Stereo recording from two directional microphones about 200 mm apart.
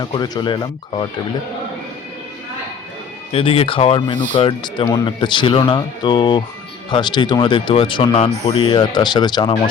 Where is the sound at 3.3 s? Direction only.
30° left (ahead or behind).